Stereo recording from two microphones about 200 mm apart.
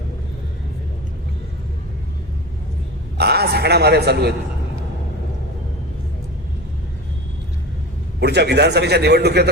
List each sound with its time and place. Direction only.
3.2 s a man's voice: 55° right (ahead or behind)
8.2 s a man's voice: 55° right (ahead or behind)